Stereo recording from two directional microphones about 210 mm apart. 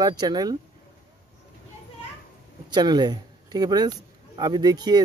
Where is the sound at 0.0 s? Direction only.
20° right (ahead or behind).